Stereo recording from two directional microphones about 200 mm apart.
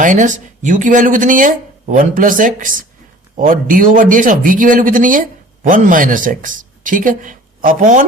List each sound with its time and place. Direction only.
0.0 s speech: 40° right (ahead or behind)